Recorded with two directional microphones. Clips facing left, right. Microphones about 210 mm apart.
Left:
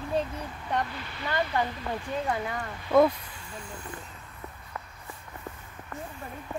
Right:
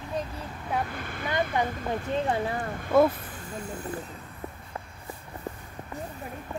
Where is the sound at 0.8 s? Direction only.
50° right (ahead or behind).